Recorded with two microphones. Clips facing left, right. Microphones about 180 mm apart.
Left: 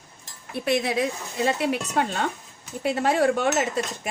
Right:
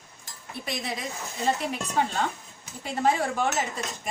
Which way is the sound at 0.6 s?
70° left (ahead or behind).